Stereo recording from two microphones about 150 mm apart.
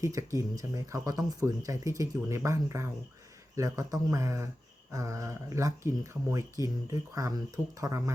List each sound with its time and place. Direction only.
0.0 s speech: 20° right (ahead or behind)